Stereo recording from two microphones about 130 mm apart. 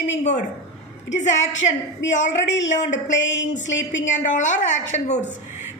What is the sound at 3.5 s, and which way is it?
A woman's voice, 70° left (ahead or behind).